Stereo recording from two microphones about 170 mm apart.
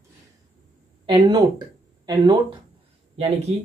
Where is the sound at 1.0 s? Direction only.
25° right (ahead or behind).